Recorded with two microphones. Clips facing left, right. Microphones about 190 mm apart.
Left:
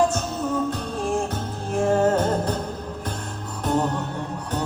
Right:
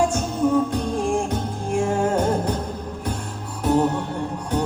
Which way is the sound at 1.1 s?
10° right (ahead or behind).